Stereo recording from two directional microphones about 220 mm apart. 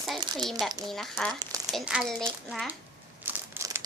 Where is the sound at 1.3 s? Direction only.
20° right (ahead or behind).